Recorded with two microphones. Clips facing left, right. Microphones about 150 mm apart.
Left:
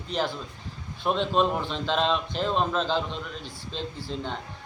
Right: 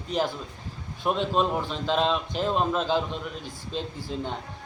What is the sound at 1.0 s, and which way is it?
A man's voice, 5° right (ahead or behind).